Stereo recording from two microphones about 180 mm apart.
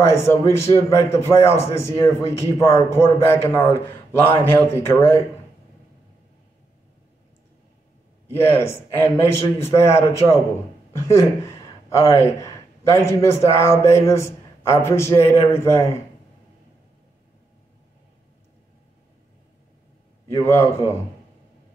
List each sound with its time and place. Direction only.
0.0 s a man's voice: 15° left (ahead or behind)
8.4 s a man's voice: 15° left (ahead or behind)
20.3 s a man's voice: 15° left (ahead or behind)